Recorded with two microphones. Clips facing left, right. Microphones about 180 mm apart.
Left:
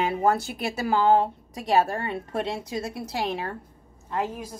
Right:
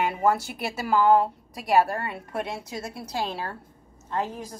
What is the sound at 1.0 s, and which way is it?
A woman's voice, 25° left (ahead or behind).